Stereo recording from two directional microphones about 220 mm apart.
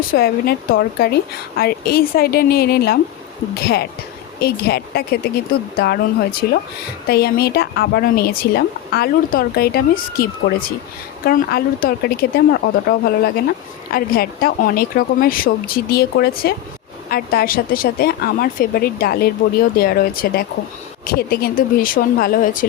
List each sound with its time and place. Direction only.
0.1 s speech: 40° left (ahead or behind)